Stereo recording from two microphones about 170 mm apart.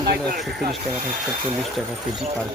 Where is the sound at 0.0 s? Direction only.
70° right (ahead or behind).